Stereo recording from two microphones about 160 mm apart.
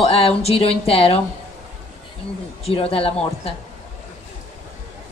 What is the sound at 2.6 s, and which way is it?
Speech, 35° left (ahead or behind).